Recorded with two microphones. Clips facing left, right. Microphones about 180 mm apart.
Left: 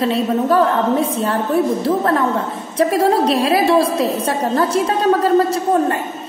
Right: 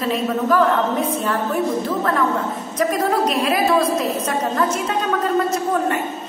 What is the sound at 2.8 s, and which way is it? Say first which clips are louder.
A woman's voice: left 4 dB; 30° left (ahead or behind).